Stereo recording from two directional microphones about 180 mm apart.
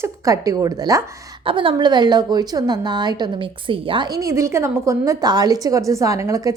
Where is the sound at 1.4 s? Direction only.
30° right (ahead or behind).